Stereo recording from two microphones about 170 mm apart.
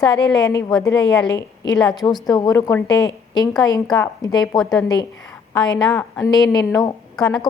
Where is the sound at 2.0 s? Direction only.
10° left (ahead or behind).